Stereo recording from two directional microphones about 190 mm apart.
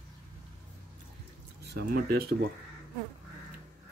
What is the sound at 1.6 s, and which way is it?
Speech, 60° right (ahead or behind).